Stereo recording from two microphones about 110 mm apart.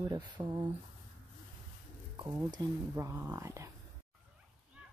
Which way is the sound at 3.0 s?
25° right (ahead or behind).